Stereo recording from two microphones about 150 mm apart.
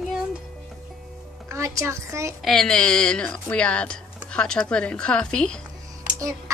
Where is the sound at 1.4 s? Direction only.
20° right (ahead or behind).